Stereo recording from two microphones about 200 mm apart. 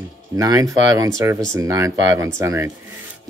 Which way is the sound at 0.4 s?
15° right (ahead or behind).